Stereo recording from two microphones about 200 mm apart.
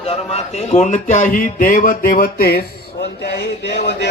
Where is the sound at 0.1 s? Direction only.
30° left (ahead or behind).